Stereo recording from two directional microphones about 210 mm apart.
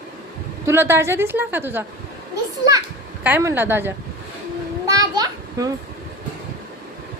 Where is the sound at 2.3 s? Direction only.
15° right (ahead or behind).